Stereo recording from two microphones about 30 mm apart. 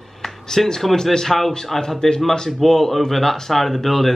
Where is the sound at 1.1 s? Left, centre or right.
Centre.